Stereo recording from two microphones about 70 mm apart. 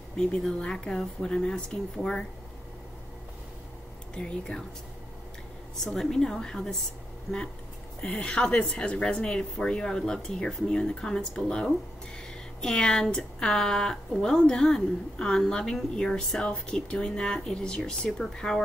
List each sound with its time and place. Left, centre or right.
0.2 s speech: centre
4.2 s speech: centre
5.9 s speech: centre
8.0 s speech: centre
12.6 s speech: centre